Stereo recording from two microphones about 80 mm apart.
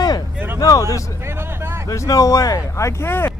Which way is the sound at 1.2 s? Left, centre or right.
Right.